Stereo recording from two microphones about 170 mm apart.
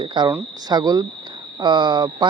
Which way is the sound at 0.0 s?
25° right (ahead or behind).